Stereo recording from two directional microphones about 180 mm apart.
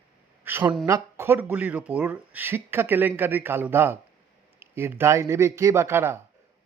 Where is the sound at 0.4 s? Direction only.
10° right (ahead or behind).